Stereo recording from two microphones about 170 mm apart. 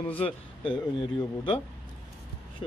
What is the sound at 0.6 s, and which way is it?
Speech, 30° left (ahead or behind).